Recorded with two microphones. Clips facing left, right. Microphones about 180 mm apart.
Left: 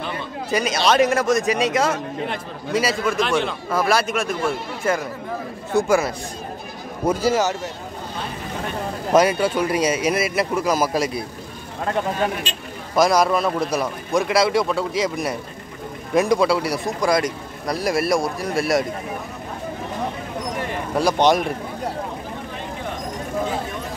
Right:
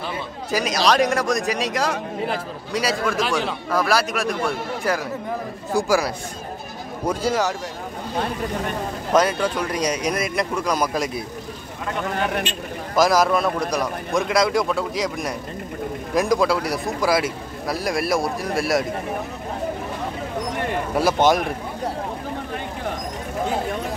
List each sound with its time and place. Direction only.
0.5 s a man's voice: centre (ahead or behind)
9.1 s a man's voice: 10° left (ahead or behind)
12.9 s a man's voice: centre (ahead or behind)
20.9 s a man's voice: 5° right (ahead or behind)